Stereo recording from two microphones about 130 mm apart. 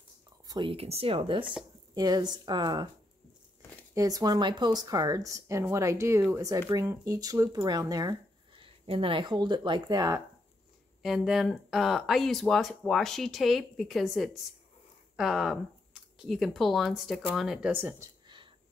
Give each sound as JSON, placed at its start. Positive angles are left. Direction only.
{"t": 0.5, "sound": "speech", "side_deg": -35}
{"t": 0.7, "sound": "speech", "side_deg": -50}
{"t": 2.0, "sound": "speech", "side_deg": -30}
{"t": 3.9, "sound": "speech", "side_deg": -30}
{"t": 8.6, "sound": "speech", "side_deg": -45}
{"t": 11.0, "sound": "speech", "side_deg": 0}
{"t": 17.6, "sound": "speech", "side_deg": -15}